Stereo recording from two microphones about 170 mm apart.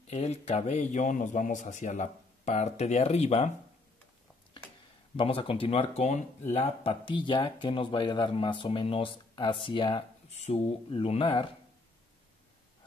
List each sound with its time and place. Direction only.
0.0 s speech: 40° left (ahead or behind)
5.1 s speech: 30° left (ahead or behind)
10.3 s speech: 40° left (ahead or behind)